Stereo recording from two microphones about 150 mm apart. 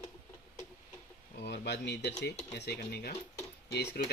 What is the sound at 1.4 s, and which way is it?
Speech, 90° left.